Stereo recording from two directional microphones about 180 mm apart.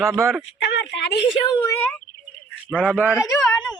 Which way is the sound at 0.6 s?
75° left (ahead or behind).